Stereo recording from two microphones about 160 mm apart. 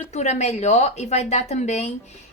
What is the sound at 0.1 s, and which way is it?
A woman's voice, 45° left (ahead or behind).